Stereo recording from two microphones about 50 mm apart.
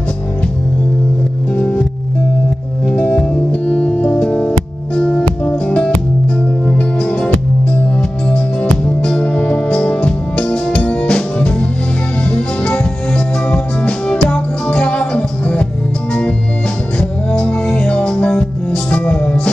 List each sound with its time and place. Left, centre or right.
2.9 s music: centre
8.8 s music: centre
16.1 s organ: left
17.3 s music: left